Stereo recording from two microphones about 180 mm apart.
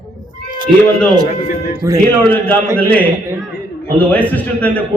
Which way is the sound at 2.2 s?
10° left (ahead or behind).